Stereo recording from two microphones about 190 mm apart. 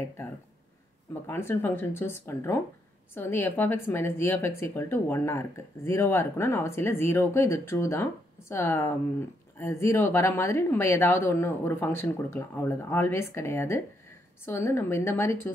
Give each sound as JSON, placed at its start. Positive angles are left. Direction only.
{"t": 1.2, "sound": "speech", "side_deg": 10}